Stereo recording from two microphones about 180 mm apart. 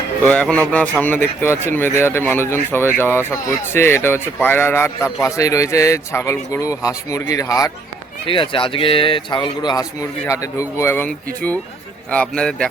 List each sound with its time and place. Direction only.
0.3 s a man's voice: 5° left (ahead or behind)